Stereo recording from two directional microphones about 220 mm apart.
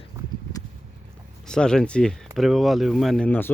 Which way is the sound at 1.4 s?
5° left (ahead or behind).